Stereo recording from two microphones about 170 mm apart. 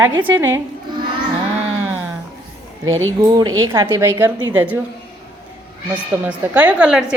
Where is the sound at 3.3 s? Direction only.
20° right (ahead or behind).